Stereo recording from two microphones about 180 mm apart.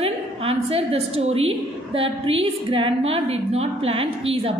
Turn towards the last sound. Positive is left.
turn(degrees=-35)  # may be behind; listen again after turning